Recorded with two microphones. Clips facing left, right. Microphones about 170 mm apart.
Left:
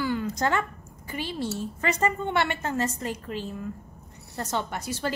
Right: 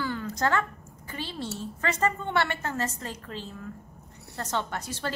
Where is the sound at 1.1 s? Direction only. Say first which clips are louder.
Left 4 dB; 15° left (ahead or behind).